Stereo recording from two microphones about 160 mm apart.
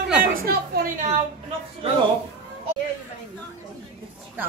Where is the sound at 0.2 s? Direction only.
65° right (ahead or behind).